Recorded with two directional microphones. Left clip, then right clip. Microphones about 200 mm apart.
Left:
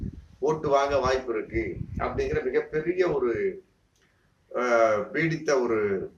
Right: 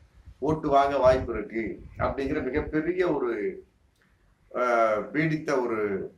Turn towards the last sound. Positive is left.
turn(degrees=-5)  # may be behind; listen again after turning